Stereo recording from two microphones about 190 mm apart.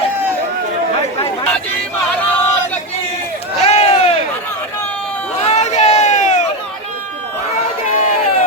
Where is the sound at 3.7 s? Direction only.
35° left (ahead or behind).